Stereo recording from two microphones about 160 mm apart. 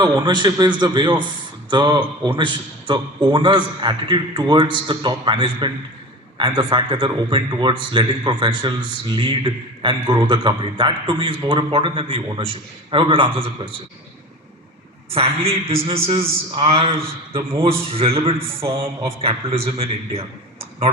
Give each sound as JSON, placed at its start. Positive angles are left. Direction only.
{"t": 0.0, "sound": "a man's voice", "side_deg": -30}
{"t": 15.1, "sound": "a man's voice", "side_deg": -35}